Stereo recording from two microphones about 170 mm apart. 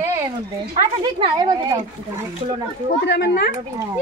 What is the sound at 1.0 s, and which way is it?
Speech, 25° right (ahead or behind).